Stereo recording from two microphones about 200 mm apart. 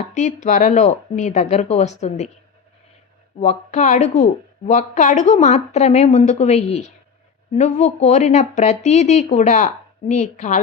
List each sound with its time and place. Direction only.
0.0 s speech: 35° left (ahead or behind)
3.4 s speech: 35° left (ahead or behind)